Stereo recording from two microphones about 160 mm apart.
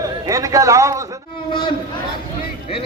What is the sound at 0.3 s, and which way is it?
Speech, 20° right (ahead or behind).